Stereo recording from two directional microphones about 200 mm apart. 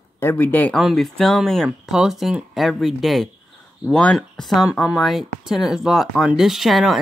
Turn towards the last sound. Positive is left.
turn(degrees=0)  # may be behind; listen again after turning